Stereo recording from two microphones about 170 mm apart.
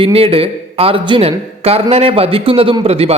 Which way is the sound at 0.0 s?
35° right (ahead or behind).